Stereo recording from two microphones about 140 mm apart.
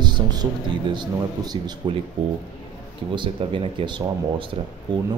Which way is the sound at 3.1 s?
35° right (ahead or behind).